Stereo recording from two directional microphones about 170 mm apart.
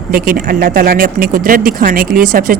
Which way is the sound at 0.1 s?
55° right (ahead or behind).